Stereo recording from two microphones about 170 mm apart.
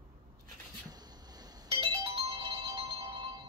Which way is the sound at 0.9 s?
25° right (ahead or behind).